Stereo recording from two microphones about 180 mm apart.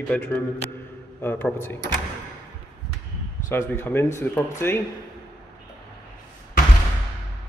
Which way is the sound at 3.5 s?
15° left (ahead or behind).